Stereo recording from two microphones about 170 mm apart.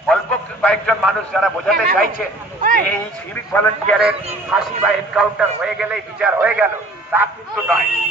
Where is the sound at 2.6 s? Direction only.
55° right (ahead or behind).